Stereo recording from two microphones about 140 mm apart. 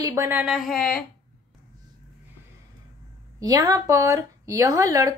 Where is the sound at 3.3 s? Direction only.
25° right (ahead or behind).